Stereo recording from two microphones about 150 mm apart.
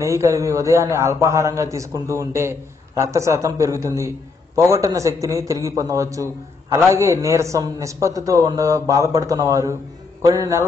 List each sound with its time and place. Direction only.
0.0 s a man's voice: 20° right (ahead or behind)